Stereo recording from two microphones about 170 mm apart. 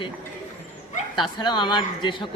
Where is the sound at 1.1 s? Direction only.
25° left (ahead or behind).